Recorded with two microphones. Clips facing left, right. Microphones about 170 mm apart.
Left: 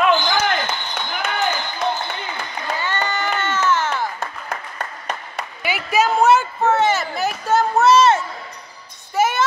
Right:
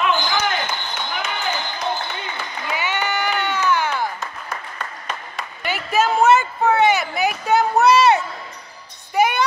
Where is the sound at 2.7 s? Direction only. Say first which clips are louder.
Right 1 dB; 15° right (ahead or behind).